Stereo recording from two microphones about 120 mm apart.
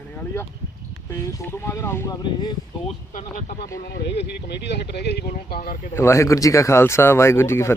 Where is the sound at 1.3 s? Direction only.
20° left (ahead or behind).